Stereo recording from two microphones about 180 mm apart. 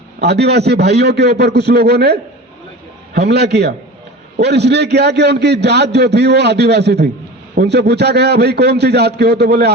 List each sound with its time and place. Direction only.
0.2 s a man's voice: 65° right (ahead or behind)
3.2 s a man's voice: 70° right (ahead or behind)